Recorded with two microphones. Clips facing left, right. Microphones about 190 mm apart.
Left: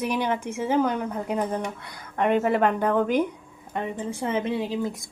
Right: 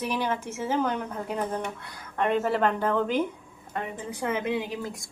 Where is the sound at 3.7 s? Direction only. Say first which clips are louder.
Left 4 dB; 25° left (ahead or behind).